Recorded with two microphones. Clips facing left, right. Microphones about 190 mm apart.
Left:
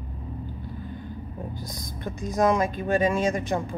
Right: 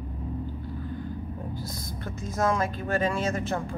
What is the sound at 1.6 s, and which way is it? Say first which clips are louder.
Speech: even; 15° left (ahead or behind).